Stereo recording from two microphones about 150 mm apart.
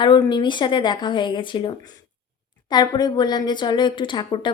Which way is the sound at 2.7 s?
25° left (ahead or behind).